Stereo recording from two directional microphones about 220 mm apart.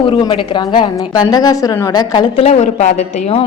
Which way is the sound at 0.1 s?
20° left (ahead or behind).